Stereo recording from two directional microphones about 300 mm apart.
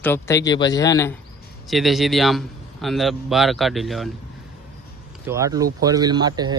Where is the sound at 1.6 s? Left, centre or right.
Centre.